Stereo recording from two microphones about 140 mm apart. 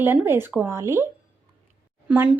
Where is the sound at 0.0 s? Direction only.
15° right (ahead or behind).